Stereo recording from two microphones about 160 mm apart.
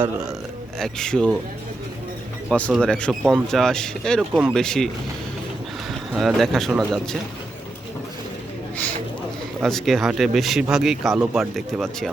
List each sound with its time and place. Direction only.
0.8 s speech: 5° left (ahead or behind)
2.5 s speech: 5° left (ahead or behind)
6.1 s speech: centre (ahead or behind)
9.6 s speech: centre (ahead or behind)